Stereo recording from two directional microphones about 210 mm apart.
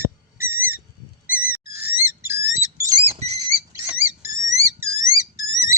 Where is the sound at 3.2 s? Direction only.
30° right (ahead or behind).